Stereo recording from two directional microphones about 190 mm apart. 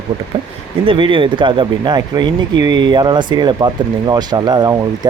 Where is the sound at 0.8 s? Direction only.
25° right (ahead or behind).